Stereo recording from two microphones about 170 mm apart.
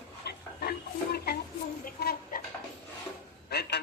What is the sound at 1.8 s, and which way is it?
Chicken, 60° left (ahead or behind).